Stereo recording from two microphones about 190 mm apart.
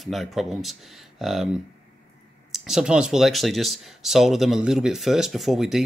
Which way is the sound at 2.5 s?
Centre (ahead or behind).